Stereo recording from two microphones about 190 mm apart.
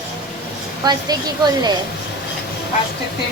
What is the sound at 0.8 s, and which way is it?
Speech, 20° right (ahead or behind).